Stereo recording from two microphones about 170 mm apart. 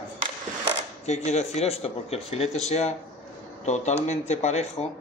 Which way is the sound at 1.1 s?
40° left (ahead or behind).